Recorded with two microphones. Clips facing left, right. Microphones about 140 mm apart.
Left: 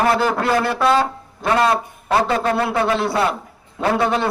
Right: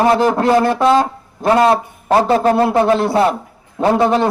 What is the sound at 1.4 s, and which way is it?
A man's voice, 35° right (ahead or behind).